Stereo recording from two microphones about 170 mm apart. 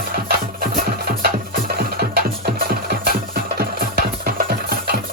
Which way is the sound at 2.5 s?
65° right (ahead or behind).